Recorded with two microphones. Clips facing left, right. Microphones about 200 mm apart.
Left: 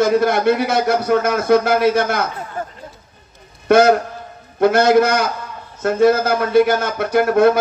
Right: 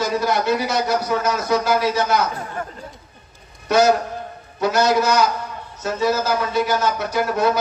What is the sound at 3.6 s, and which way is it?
A man's voice, 55° left (ahead or behind).